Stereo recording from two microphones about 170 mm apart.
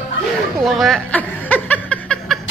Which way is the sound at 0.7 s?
Centre (ahead or behind).